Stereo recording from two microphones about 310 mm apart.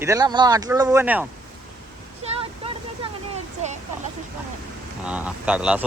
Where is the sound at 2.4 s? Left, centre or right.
Centre.